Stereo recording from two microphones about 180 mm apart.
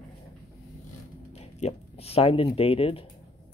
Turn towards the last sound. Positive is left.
turn(degrees=30)  # may be behind; listen again after turning